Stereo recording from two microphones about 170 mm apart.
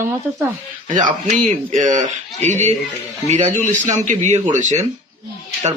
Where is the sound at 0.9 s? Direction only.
50° right (ahead or behind).